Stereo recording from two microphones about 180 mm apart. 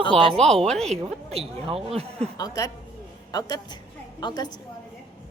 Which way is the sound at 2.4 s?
20° left (ahead or behind).